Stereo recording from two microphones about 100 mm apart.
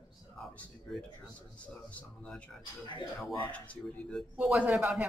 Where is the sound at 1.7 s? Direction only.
10° left (ahead or behind).